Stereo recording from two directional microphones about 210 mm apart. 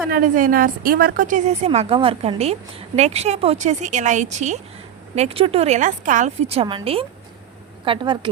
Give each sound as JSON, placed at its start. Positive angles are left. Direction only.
{"t": 0.1, "sound": "a woman's voice", "side_deg": -40}